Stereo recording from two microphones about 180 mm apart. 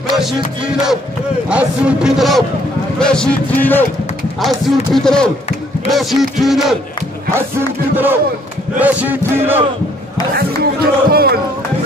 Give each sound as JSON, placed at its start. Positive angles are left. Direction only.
{"t": 1.5, "sound": "speech", "side_deg": -5}
{"t": 7.9, "sound": "chant", "side_deg": -10}
{"t": 10.3, "sound": "speech", "side_deg": -60}